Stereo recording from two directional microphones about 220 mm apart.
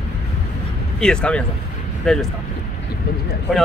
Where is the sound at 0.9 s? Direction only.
5° left (ahead or behind).